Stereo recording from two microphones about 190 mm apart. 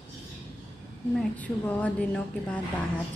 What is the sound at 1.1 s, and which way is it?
A woman's voice, 10° left (ahead or behind).